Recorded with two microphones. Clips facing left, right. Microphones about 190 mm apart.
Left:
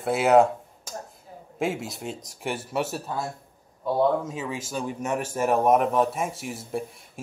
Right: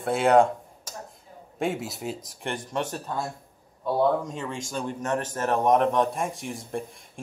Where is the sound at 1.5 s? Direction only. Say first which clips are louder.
Even; centre (ahead or behind).